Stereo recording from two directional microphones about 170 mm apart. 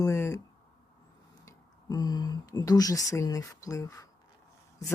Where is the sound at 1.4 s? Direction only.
20° left (ahead or behind).